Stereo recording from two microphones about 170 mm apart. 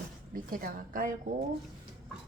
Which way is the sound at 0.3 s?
55° right (ahead or behind).